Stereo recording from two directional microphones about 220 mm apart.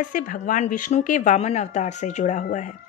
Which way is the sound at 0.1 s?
35° left (ahead or behind).